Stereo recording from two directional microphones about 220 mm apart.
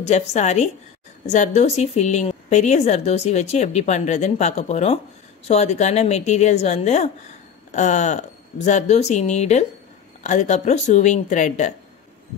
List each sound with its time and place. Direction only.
0.0 s a woman's voice: 30° left (ahead or behind)